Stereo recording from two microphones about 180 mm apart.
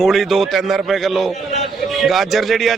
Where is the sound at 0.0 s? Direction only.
Centre (ahead or behind).